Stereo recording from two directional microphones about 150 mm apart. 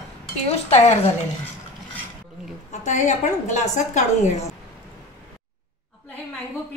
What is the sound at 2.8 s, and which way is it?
Speech, 50° left (ahead or behind).